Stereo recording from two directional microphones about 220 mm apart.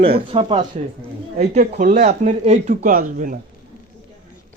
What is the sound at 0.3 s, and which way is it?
Speech, 25° right (ahead or behind).